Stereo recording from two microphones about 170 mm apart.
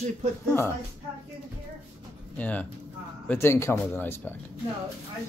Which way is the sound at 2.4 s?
10° left (ahead or behind).